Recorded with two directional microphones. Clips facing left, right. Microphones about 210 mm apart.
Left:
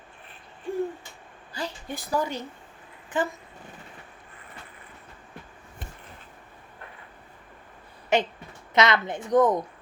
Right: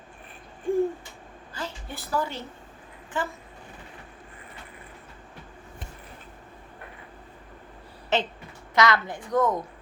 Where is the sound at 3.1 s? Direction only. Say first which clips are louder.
Left 4 dB; 15° left (ahead or behind).